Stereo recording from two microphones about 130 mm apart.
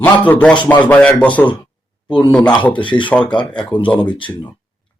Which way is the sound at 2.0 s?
35° left (ahead or behind).